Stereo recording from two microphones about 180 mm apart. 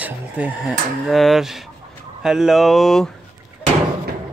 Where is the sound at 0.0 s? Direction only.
10° right (ahead or behind).